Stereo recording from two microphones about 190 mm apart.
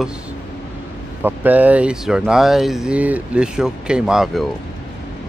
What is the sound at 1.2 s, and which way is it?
Speech, 10° right (ahead or behind).